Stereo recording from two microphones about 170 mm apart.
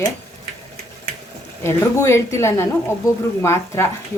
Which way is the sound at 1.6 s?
15° left (ahead or behind).